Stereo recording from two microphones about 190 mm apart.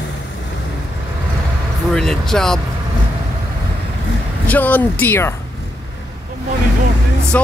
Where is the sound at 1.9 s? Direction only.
5° left (ahead or behind).